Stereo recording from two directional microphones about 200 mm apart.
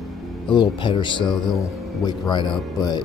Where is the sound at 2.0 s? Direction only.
20° left (ahead or behind).